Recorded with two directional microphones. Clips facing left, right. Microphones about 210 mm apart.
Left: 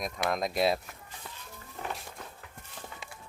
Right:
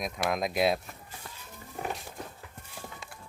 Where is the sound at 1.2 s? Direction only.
Centre (ahead or behind).